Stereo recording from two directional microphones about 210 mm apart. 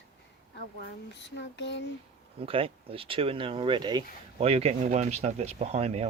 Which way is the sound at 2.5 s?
25° right (ahead or behind).